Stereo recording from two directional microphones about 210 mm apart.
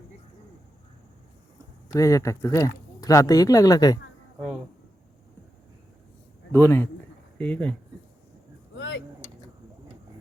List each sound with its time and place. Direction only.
1.9 s speech: 15° left (ahead or behind)
6.5 s speech: 10° left (ahead or behind)
8.7 s vehicle: 60° left (ahead or behind)